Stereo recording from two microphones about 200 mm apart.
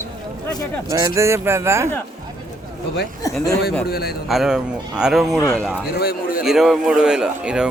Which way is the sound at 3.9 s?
50° left (ahead or behind).